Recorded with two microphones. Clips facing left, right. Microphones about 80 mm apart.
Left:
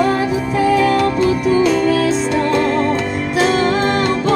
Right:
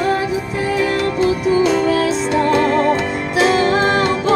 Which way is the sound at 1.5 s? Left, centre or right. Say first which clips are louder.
Even; right.